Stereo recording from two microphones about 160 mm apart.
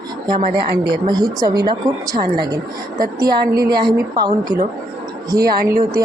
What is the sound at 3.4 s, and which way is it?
Speech, 70° right (ahead or behind).